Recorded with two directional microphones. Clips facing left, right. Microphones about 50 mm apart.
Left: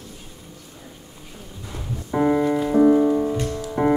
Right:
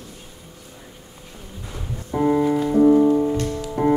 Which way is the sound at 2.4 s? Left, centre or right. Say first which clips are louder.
Right 1 dB; centre.